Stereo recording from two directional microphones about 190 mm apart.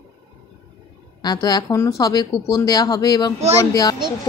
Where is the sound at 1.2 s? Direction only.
20° left (ahead or behind).